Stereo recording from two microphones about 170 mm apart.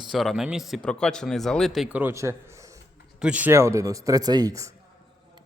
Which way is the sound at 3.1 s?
5° right (ahead or behind).